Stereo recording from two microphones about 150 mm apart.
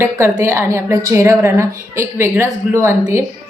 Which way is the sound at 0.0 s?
15° right (ahead or behind).